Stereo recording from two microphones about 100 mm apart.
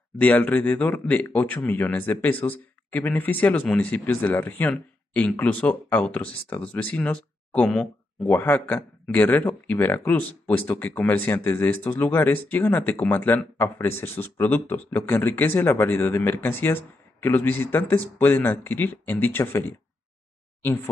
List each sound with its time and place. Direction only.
0.2 s speech: 15° left (ahead or behind)
8.3 s speech: 15° left (ahead or behind)